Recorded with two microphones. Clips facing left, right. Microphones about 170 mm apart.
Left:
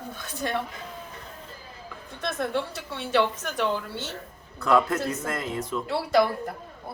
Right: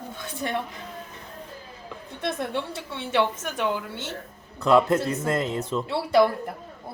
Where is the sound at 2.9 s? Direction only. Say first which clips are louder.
Even; 20° right (ahead or behind).